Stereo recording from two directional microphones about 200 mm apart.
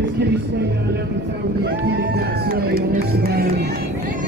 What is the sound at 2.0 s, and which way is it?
Music, 50° right (ahead or behind).